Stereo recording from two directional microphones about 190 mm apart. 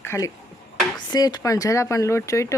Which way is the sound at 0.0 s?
15° left (ahead or behind).